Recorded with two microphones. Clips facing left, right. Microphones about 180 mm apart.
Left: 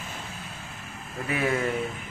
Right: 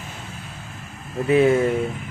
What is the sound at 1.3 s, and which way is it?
Speech, 25° right (ahead or behind).